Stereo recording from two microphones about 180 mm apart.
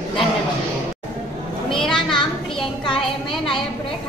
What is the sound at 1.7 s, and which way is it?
Children playing, 5° left (ahead or behind).